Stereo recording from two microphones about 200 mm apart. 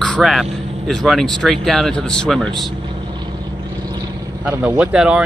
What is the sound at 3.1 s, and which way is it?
Vehicle, 20° right (ahead or behind).